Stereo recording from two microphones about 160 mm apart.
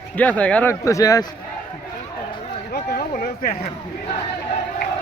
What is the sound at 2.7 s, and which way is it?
Speech, 70° left (ahead or behind).